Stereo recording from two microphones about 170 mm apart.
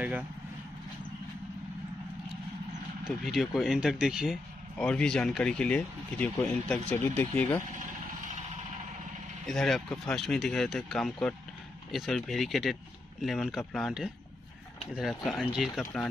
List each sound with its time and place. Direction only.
3.3 s speech: centre (ahead or behind)
9.5 s speech: 5° left (ahead or behind)